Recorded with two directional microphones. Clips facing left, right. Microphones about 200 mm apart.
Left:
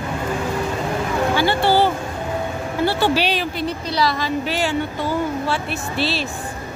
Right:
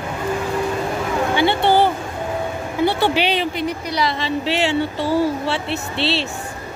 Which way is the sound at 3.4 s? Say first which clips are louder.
Right 2 dB; 15° right (ahead or behind).